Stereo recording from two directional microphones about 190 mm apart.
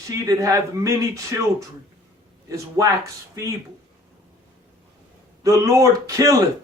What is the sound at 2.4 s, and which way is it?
Speech, 15° right (ahead or behind).